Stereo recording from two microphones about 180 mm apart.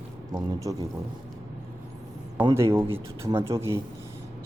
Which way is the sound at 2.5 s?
15° right (ahead or behind).